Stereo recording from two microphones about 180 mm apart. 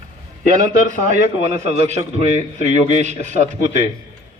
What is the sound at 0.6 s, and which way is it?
A man's voice, 40° right (ahead or behind).